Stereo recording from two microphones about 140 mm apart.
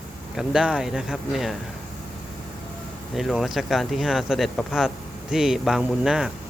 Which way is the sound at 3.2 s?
Centre (ahead or behind).